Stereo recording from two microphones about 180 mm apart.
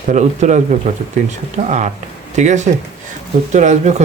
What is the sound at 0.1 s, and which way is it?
Speech, 40° right (ahead or behind).